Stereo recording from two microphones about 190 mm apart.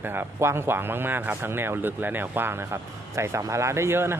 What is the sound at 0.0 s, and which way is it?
A man's voice, 10° right (ahead or behind).